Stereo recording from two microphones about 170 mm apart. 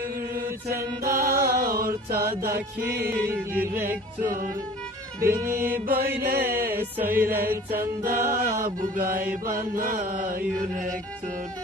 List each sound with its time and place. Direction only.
1.0 s music: 55° right (ahead or behind)
3.0 s music: 10° right (ahead or behind)
5.3 s music: 15° right (ahead or behind)
5.9 s mantra: 65° right (ahead or behind)
6.7 s music: 10° right (ahead or behind)
7.2 s mantra: 60° right (ahead or behind)